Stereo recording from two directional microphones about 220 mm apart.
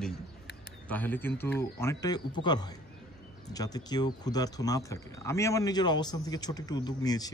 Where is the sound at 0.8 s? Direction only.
10° left (ahead or behind).